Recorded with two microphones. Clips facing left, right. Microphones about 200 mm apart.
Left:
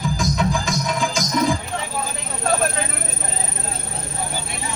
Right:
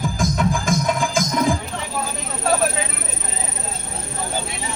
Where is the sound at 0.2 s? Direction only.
50° right (ahead or behind).